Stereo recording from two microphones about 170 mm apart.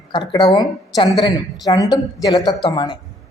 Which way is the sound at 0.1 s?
25° left (ahead or behind).